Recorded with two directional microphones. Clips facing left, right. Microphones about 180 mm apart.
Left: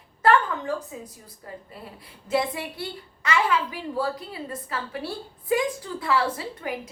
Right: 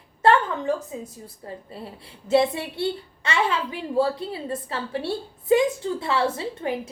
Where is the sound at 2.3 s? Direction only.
25° right (ahead or behind).